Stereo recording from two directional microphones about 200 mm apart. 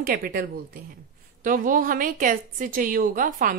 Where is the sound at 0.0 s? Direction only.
45° right (ahead or behind).